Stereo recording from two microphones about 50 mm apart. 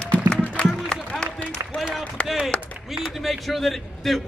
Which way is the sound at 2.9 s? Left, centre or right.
Centre.